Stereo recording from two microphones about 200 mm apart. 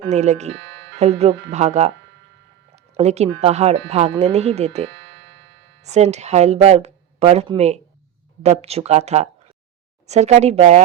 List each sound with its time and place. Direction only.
0.0 s speech: 35° right (ahead or behind)
2.9 s speech: 35° right (ahead or behind)